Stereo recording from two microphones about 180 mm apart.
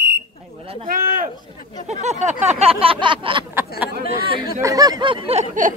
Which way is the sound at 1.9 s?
40° right (ahead or behind).